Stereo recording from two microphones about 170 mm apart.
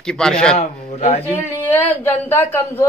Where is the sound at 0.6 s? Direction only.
40° left (ahead or behind).